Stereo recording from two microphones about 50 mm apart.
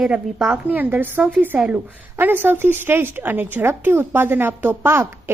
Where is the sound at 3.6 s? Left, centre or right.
Right.